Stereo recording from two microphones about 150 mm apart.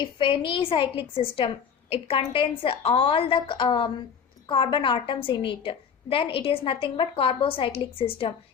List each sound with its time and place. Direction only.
0.0 s a woman's voice: 35° left (ahead or behind)